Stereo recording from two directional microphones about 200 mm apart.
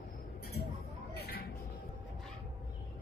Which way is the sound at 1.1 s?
50° left (ahead or behind).